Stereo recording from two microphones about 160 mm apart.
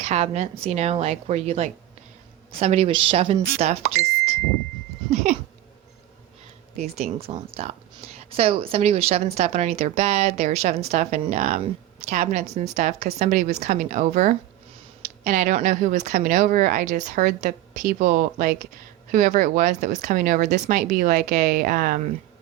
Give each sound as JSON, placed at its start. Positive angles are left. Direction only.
{"t": 0.0, "sound": "a woman's voice", "side_deg": -40}
{"t": 5.1, "sound": "a sound", "side_deg": -50}
{"t": 6.7, "sound": "a woman's voice", "side_deg": -45}